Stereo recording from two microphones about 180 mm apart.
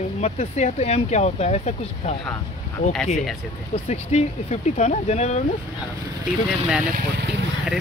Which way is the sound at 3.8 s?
35° left (ahead or behind).